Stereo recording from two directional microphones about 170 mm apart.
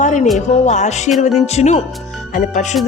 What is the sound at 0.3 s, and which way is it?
Speech, 45° left (ahead or behind).